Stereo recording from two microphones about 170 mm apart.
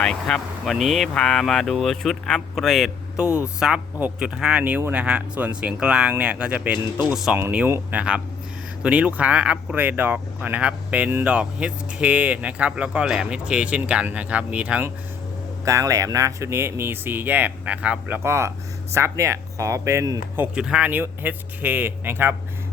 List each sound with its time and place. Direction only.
0.0 s speech: 5° left (ahead or behind); by 22.4 s 15° right (ahead or behind)